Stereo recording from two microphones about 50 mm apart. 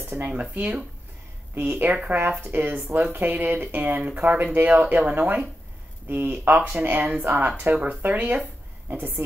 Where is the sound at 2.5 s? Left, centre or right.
Right.